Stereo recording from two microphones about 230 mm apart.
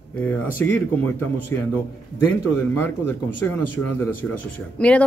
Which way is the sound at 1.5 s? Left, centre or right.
Centre.